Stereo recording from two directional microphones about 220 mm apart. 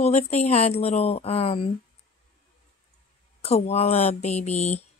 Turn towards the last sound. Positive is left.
turn(degrees=30)  # may be behind; listen again after turning